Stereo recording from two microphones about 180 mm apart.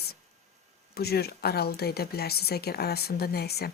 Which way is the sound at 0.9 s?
60° left (ahead or behind).